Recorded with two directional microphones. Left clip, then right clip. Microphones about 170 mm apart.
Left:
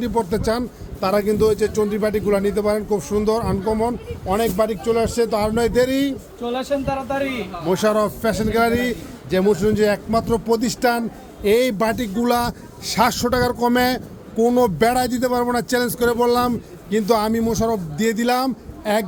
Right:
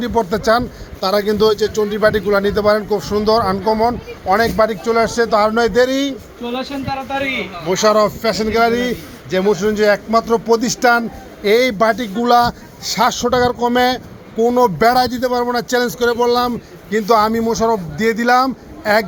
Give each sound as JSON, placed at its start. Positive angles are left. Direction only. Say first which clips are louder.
{"t": 0.0, "sound": "a man's voice", "louder": "right 4 dB", "side_deg": 20}
{"t": 1.0, "sound": "a man's voice", "louder": "right 3 dB", "side_deg": 5}
{"t": 6.4, "sound": "speech", "louder": "right 1 dB", "side_deg": 45}
{"t": 6.8, "sound": "a man's voice", "louder": "right 2 dB", "side_deg": 25}